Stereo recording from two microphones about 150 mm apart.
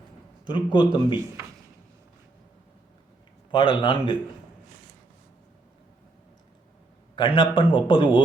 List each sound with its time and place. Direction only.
0.4 s speech: 35° left (ahead or behind)
3.5 s speech: 35° left (ahead or behind)
7.2 s speech: 35° left (ahead or behind)